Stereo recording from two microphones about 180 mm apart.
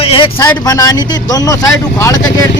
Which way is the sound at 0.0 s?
30° left (ahead or behind).